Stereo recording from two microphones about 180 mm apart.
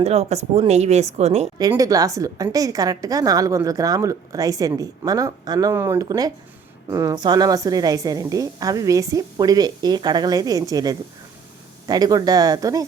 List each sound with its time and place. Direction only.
0.0 s speech: 35° right (ahead or behind)
1.5 s a woman's voice: 20° right (ahead or behind)